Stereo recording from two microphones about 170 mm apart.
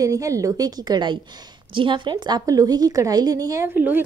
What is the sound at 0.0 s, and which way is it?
A woman's voice, 20° right (ahead or behind).